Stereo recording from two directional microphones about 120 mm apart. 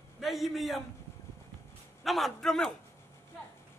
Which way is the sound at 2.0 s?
Centre (ahead or behind).